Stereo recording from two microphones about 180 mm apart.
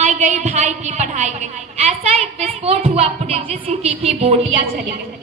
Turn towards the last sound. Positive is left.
turn(degrees=-35)  # may be behind; listen again after turning